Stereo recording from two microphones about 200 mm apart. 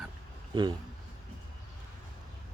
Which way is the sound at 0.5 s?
20° right (ahead or behind).